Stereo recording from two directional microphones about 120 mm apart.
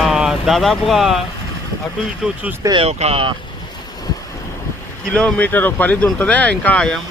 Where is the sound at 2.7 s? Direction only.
60° right (ahead or behind).